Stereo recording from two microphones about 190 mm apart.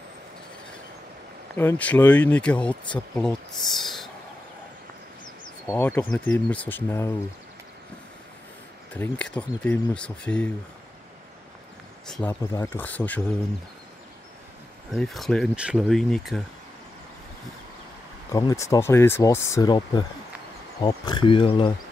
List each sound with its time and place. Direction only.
1.5 s speech: 10° left (ahead or behind)
5.7 s speech: 5° left (ahead or behind)
8.9 s speech: 5° left (ahead or behind)
12.1 s speech: 10° left (ahead or behind)
14.9 s speech: centre (ahead or behind)
18.3 s speech: 15° left (ahead or behind)